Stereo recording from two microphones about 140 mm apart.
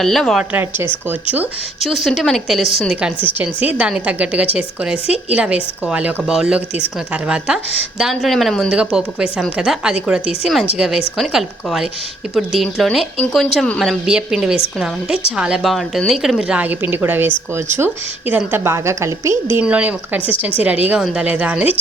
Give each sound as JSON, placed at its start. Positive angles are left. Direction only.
{"t": 0.0, "sound": "speech", "side_deg": 0}
{"t": 0.5, "sound": "a woman's voice", "side_deg": -15}
{"t": 1.8, "sound": "a woman's voice", "side_deg": 0}